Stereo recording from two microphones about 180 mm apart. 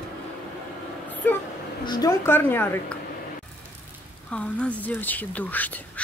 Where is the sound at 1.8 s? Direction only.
20° left (ahead or behind).